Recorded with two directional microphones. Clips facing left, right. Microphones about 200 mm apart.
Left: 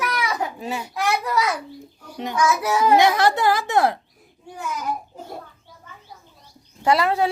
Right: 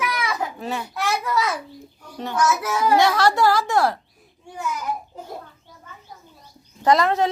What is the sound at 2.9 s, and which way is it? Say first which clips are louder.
Speech: even; 20° left (ahead or behind).